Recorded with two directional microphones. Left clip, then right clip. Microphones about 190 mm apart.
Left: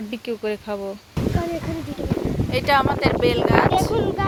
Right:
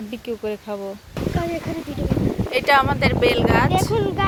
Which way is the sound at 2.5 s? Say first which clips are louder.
Right 2 dB; centre (ahead or behind).